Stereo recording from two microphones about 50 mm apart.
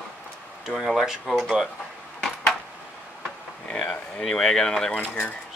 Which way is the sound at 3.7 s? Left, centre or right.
Left.